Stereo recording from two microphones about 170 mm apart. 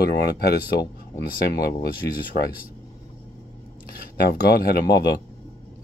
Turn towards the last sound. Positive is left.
turn(degrees=70)  # may be behind; listen again after turning